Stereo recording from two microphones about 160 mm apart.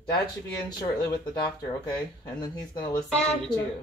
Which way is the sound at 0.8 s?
25° left (ahead or behind).